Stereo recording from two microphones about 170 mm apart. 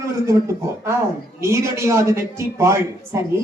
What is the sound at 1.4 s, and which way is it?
Speech, 15° right (ahead or behind).